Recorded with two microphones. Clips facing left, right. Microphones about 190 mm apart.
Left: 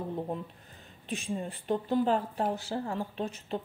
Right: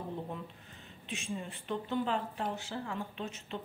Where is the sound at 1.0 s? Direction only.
40° left (ahead or behind).